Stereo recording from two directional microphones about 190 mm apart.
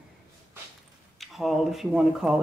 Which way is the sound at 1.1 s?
Centre (ahead or behind).